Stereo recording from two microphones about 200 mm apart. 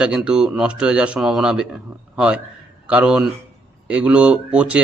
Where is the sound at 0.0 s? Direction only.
5° right (ahead or behind).